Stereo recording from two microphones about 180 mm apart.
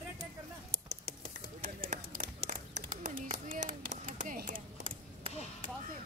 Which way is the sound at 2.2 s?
30° right (ahead or behind).